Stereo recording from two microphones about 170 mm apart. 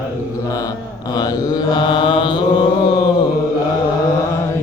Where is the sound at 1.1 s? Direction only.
20° left (ahead or behind).